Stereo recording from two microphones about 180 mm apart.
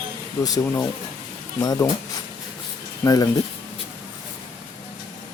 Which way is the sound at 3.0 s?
20° left (ahead or behind).